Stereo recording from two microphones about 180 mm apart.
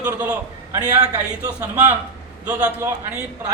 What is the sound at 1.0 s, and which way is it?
A man's voice, 20° right (ahead or behind).